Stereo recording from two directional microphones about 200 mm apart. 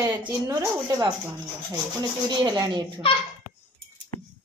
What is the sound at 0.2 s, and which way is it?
Speech, 15° right (ahead or behind).